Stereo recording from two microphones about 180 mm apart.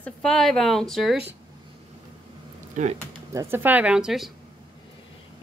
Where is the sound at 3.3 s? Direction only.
15° right (ahead or behind).